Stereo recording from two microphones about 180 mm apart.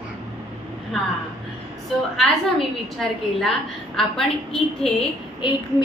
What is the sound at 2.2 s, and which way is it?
A woman's voice, centre (ahead or behind).